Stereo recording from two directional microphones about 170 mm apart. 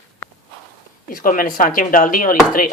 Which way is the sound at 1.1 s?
55° left (ahead or behind).